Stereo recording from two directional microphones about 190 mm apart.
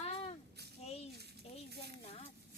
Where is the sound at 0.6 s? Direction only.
60° right (ahead or behind).